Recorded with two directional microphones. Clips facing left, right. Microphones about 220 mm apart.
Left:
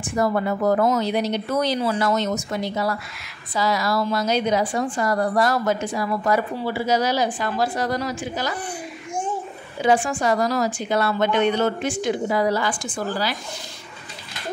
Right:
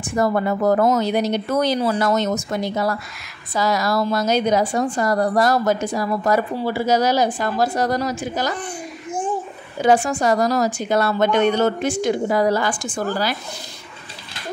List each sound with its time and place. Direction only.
0.0 s a woman's voice: 45° right (ahead or behind)
9.8 s a woman's voice: 40° right (ahead or behind)